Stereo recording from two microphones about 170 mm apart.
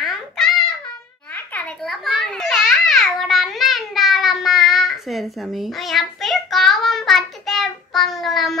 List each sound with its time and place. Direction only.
0.0 s babbling: centre (ahead or behind)
1.3 s babbling: 10° left (ahead or behind)